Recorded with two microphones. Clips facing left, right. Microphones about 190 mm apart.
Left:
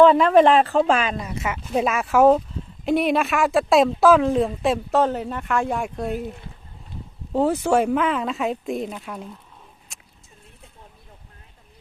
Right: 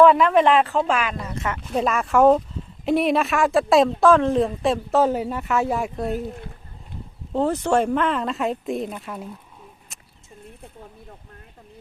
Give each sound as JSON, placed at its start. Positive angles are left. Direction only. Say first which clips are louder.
{"t": 0.0, "sound": "speech", "louder": "left 1 dB", "side_deg": 30}
{"t": 1.3, "sound": "speech", "louder": "left 1 dB", "side_deg": 10}
{"t": 7.3, "sound": "speech", "louder": "left 1 dB", "side_deg": 5}
{"t": 9.9, "sound": "a sound", "louder": "even", "side_deg": 0}